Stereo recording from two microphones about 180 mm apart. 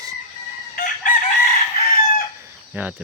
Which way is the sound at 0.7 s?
50° left (ahead or behind).